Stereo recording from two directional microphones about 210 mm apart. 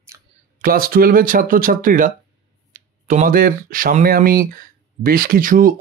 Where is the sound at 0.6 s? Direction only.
45° right (ahead or behind).